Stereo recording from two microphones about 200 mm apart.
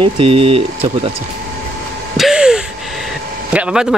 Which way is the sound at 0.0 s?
25° right (ahead or behind).